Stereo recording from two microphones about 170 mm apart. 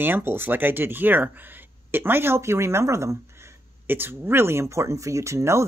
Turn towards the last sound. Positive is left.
turn(degrees=-15)  # may be behind; listen again after turning